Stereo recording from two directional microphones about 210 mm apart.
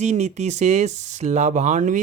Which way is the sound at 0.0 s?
35° right (ahead or behind).